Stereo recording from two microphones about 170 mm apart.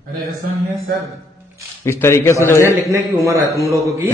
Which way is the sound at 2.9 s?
15° right (ahead or behind).